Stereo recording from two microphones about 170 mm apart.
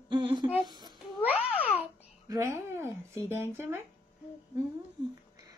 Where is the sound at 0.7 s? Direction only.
25° right (ahead or behind).